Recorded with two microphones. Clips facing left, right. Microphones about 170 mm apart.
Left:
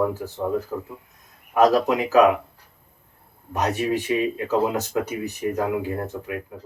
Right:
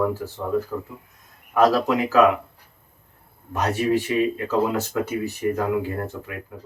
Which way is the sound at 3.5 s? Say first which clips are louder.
Right 2 dB; 15° left (ahead or behind).